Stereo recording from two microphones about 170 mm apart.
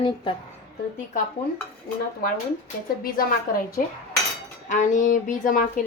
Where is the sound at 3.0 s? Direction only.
55° left (ahead or behind).